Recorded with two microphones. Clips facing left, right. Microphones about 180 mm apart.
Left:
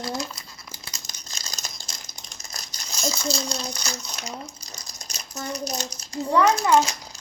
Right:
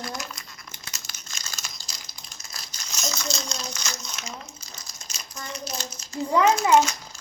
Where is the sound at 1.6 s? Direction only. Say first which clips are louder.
Left 2 dB; 50° left (ahead or behind).